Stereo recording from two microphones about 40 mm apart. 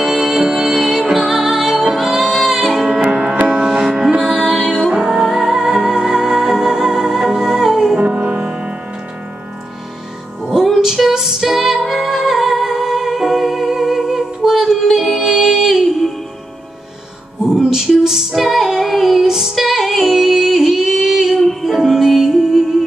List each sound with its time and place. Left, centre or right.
0.0 s music: centre
2.9 s music: centre
8.0 s music: right
11.0 s music: centre
17.6 s female singing: centre
19.5 s music: centre
21.5 s music: centre
21.7 s music: centre